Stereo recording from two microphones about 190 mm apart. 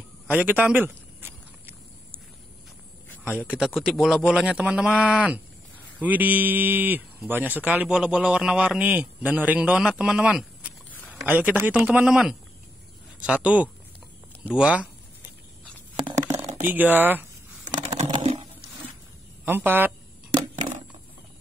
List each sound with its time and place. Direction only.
0.3 s speech: 10° right (ahead or behind)
3.3 s a man's voice: 5° right (ahead or behind)
16.6 s speech: 10° right (ahead or behind)
17.7 s computer keyboard: 35° right (ahead or behind)
18.1 s a sound: 35° right (ahead or behind)
19.4 s speech: 10° right (ahead or behind)